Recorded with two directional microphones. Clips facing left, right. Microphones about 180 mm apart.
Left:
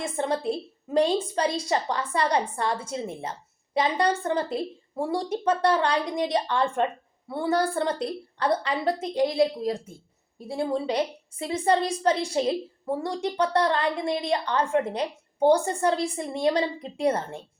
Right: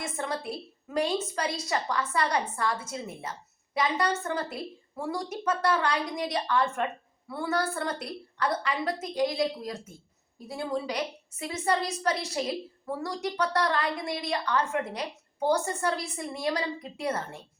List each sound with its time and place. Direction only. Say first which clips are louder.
0.0 s a woman's voice: left 6 dB; 25° left (ahead or behind)